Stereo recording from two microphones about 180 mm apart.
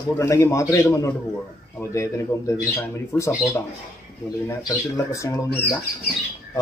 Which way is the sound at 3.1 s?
15° left (ahead or behind).